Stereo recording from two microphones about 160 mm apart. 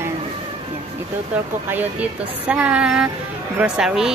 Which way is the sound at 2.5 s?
10° right (ahead or behind).